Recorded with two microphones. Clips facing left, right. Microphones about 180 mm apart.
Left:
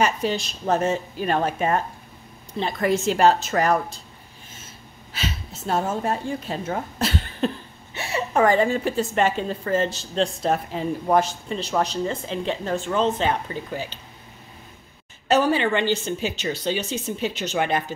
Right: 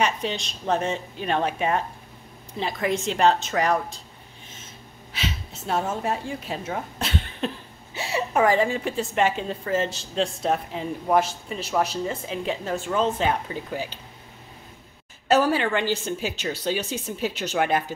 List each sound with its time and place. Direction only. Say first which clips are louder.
0.0 s a woman's voice: left 3 dB; 5° left (ahead or behind)
5.1 s a woman's voice: left 1 dB; centre (ahead or behind)
7.9 s a woman's voice: left 1 dB; 15° right (ahead or behind)
15.2 s a woman's voice: left 1 dB; 5° right (ahead or behind)